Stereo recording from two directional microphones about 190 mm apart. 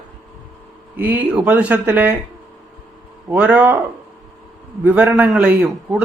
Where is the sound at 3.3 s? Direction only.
10° right (ahead or behind).